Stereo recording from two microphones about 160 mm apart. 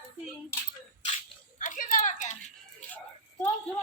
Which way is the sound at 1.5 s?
55° left (ahead or behind).